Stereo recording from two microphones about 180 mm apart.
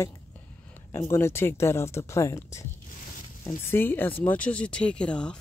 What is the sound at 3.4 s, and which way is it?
Speech, 10° left (ahead or behind).